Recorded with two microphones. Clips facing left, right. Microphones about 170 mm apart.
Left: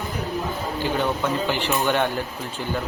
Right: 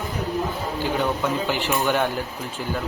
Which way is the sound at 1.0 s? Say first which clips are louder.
Even; 5° right (ahead or behind).